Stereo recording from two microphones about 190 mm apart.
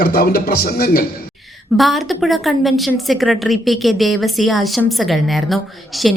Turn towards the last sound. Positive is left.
turn(degrees=0)  # may be behind; listen again after turning